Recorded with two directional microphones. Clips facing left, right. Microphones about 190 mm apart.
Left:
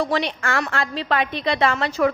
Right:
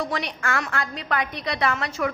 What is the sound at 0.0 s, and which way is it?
A woman's voice, 30° left (ahead or behind).